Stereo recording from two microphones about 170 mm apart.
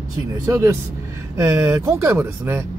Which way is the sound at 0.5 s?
20° right (ahead or behind).